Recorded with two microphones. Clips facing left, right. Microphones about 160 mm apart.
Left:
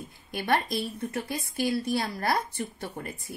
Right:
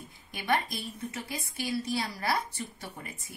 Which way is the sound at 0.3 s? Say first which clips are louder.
Left 3 dB; 60° left (ahead or behind).